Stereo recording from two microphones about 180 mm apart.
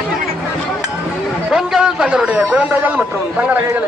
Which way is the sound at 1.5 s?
5° right (ahead or behind).